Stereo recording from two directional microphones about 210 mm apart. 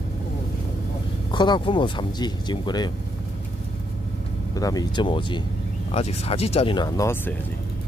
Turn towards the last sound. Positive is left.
turn(degrees=15)  # may be behind; listen again after turning